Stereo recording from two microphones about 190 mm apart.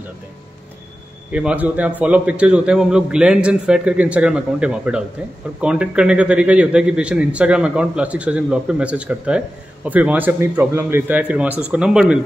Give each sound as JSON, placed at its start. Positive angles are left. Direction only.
{"t": 1.3, "sound": "a man's voice", "side_deg": -5}